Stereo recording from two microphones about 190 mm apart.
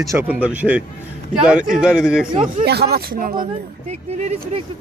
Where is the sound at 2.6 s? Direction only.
60° right (ahead or behind).